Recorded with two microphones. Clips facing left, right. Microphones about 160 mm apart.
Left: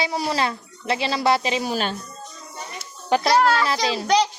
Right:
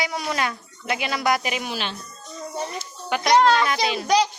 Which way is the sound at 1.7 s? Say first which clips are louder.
Left 5 dB; 45° left (ahead or behind).